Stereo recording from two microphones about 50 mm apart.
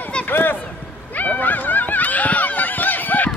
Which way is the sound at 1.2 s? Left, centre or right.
Left.